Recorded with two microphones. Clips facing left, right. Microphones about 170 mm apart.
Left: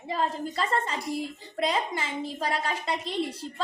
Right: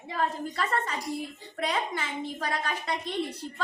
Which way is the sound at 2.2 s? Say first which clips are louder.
Left 3 dB; 30° left (ahead or behind).